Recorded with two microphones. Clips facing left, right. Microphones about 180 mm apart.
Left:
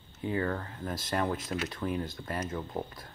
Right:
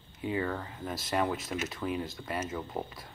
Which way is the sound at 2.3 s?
5° right (ahead or behind).